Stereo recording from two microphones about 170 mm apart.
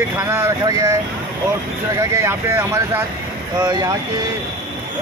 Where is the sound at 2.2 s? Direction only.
15° right (ahead or behind).